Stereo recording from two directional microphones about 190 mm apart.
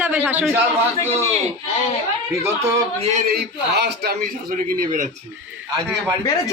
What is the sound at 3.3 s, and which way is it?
Speech, 60° right (ahead or behind).